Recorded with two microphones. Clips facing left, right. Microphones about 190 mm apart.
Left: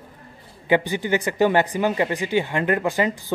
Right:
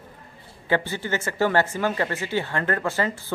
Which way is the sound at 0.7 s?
15° left (ahead or behind).